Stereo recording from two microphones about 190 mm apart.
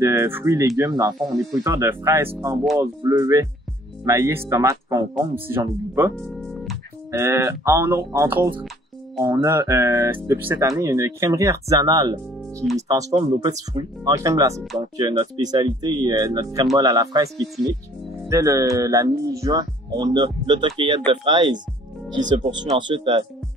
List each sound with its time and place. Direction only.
0.0 s speech: 15° right (ahead or behind)
1.1 s speech: centre (ahead or behind)
1.6 s speech: 15° right (ahead or behind)
6.1 s music: centre (ahead or behind)
7.1 s speech: 15° right (ahead or behind)